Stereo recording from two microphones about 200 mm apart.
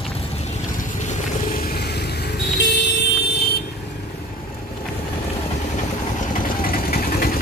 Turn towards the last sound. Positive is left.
turn(degrees=45)  # may be behind; listen again after turning